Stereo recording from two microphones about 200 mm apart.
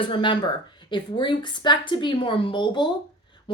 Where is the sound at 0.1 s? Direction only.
25° left (ahead or behind).